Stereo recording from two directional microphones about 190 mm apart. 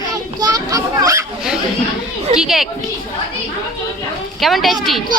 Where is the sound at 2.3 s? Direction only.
Centre (ahead or behind).